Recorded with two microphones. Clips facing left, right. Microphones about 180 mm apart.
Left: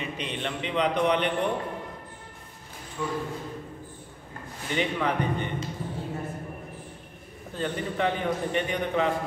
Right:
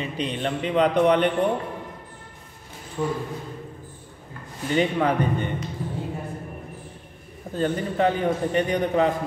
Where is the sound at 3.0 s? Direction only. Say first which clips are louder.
Right 6 dB; 40° right (ahead or behind).